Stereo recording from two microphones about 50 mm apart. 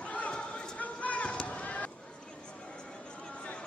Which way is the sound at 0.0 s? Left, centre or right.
Left.